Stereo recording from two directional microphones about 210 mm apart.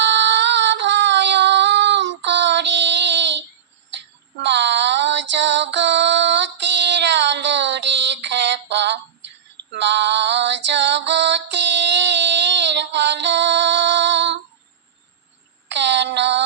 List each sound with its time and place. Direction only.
0.0 s female singing: 55° right (ahead or behind)
4.4 s female singing: 55° right (ahead or behind)
15.7 s child singing: 55° right (ahead or behind)